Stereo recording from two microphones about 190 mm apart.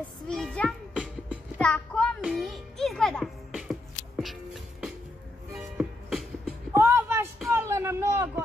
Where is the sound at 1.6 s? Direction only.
5° left (ahead or behind).